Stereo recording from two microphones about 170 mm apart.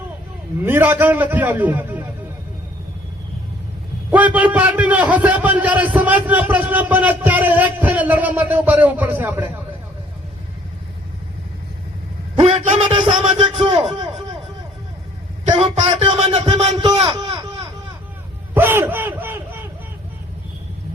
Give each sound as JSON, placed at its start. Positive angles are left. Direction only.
{"t": 0.6, "sound": "a man's voice", "side_deg": -10}
{"t": 4.1, "sound": "a man's voice", "side_deg": -10}
{"t": 12.4, "sound": "speech", "side_deg": -35}
{"t": 15.5, "sound": "speech", "side_deg": -30}
{"t": 16.7, "sound": "a man's voice", "side_deg": -25}
{"t": 18.5, "sound": "crowd", "side_deg": -10}